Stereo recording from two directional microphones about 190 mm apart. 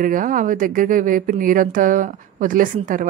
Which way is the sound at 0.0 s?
45° right (ahead or behind).